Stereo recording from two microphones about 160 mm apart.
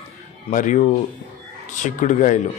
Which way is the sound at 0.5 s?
50° left (ahead or behind).